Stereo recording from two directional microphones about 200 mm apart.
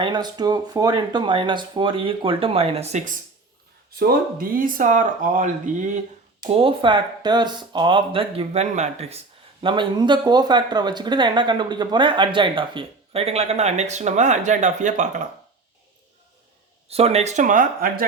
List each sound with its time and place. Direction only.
0.0 s speech: 20° right (ahead or behind)
3.9 s speech: 50° right (ahead or behind)
6.4 s speech: 25° right (ahead or behind)
16.9 s speech: 30° right (ahead or behind)